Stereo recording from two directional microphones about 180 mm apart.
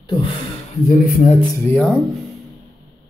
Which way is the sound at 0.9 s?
50° left (ahead or behind).